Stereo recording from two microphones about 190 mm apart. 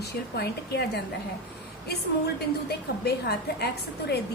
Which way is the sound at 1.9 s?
55° left (ahead or behind).